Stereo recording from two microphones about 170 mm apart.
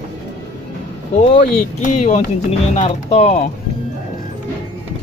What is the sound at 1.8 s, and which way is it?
Speech, 45° left (ahead or behind).